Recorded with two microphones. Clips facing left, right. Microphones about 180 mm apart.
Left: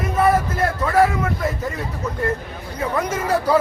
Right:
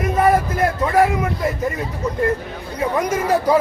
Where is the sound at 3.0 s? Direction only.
10° right (ahead or behind).